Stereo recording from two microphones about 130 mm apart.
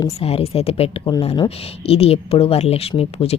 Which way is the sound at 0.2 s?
50° left (ahead or behind).